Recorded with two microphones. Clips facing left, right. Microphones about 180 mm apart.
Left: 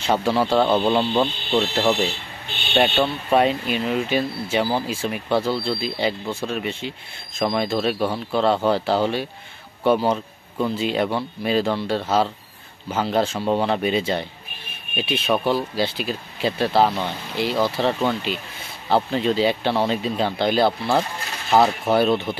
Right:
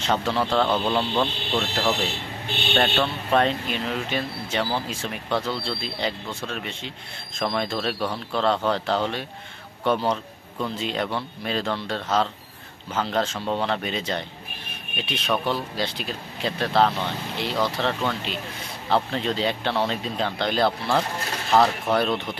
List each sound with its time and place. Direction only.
0.0 s speech: 10° left (ahead or behind)
0.7 s speech: 20° left (ahead or behind); by 22.3 s 5° left (ahead or behind)